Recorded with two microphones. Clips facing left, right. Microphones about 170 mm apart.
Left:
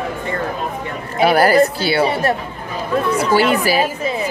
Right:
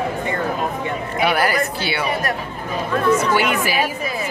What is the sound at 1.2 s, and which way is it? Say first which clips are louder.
A woman's voice: left 7 dB; 35° left (ahead or behind).